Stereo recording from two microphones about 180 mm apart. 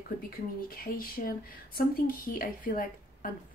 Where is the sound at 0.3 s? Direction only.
55° left (ahead or behind).